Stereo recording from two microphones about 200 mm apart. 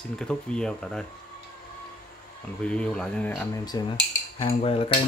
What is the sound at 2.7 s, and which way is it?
Speech, 5° left (ahead or behind).